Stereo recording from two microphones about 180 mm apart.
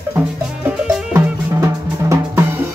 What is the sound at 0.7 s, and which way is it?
Drum, 10° right (ahead or behind).